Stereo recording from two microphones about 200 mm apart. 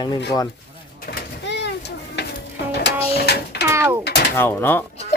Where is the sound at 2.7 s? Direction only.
55° left (ahead or behind).